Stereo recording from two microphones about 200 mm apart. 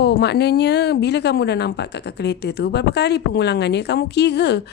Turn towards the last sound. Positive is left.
turn(degrees=55)  # may be behind; listen again after turning